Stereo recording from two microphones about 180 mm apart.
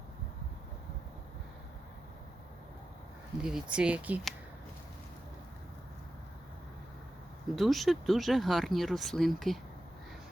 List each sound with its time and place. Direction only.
3.4 s speech: 5° right (ahead or behind)
7.5 s speech: centre (ahead or behind)